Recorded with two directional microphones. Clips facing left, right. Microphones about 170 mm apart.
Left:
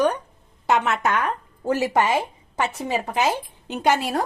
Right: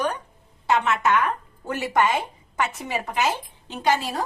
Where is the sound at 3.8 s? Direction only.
55° left (ahead or behind).